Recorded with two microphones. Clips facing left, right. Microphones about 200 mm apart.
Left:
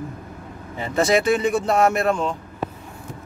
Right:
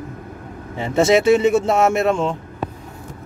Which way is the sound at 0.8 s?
25° right (ahead or behind).